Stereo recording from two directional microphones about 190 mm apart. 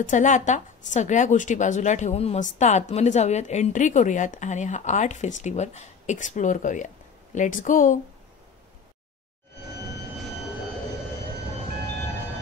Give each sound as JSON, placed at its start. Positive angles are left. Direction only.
{"t": 0.0, "sound": "a woman's voice", "side_deg": 40}